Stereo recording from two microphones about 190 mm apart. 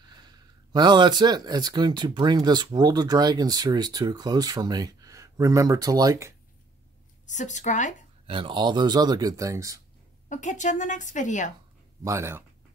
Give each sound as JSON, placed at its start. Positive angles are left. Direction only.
{"t": 0.7, "sound": "speech", "side_deg": -25}
{"t": 7.2, "sound": "a woman's voice", "side_deg": 40}
{"t": 8.3, "sound": "speech", "side_deg": -25}
{"t": 10.3, "sound": "a woman's voice", "side_deg": 40}
{"t": 12.0, "sound": "speech", "side_deg": -15}